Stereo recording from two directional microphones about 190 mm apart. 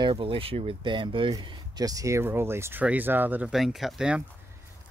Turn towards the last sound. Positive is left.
turn(degrees=-5)  # may be behind; listen again after turning